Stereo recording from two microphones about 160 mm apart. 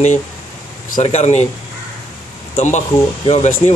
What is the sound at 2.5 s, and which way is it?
A man's voice, 45° left (ahead or behind).